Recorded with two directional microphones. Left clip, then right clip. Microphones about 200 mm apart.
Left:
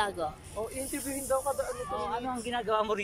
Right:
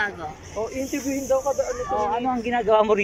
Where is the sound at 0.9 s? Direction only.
15° right (ahead or behind).